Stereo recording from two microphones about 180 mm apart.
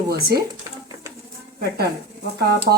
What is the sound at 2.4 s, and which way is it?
Speech, 60° right (ahead or behind).